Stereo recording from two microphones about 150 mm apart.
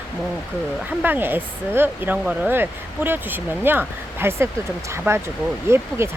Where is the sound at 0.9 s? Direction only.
10° right (ahead or behind).